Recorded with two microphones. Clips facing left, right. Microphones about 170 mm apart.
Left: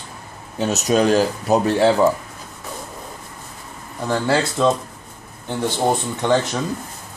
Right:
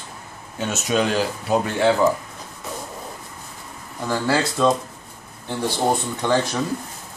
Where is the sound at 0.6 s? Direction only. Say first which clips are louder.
Left 4 dB; 40° left (ahead or behind).